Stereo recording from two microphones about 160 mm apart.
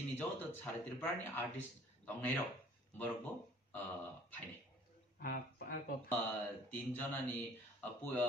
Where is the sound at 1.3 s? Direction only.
10° left (ahead or behind).